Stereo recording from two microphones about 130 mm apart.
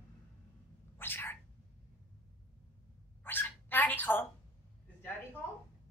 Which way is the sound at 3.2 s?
15° left (ahead or behind).